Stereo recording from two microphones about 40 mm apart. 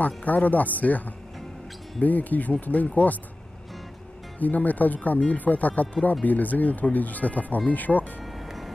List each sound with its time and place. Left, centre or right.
0.0 s speech: left
4.4 s speech: left
8.2 s music: centre